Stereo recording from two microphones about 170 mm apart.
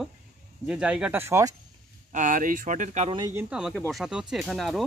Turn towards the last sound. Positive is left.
turn(degrees=0)  # may be behind; listen again after turning